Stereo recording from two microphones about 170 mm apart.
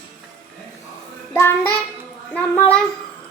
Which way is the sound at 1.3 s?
15° left (ahead or behind).